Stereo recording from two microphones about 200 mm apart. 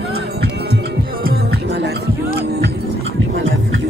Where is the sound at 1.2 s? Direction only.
55° right (ahead or behind).